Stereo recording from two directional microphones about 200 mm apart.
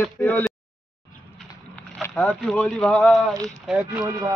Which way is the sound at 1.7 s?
5° left (ahead or behind).